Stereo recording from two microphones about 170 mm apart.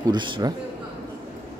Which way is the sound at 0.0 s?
25° right (ahead or behind).